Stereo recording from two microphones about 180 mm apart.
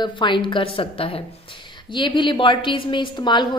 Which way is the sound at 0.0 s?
25° left (ahead or behind).